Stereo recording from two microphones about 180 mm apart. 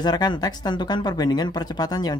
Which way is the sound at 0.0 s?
25° left (ahead or behind).